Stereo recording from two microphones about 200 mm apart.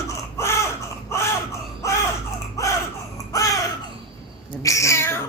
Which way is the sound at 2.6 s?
15° left (ahead or behind).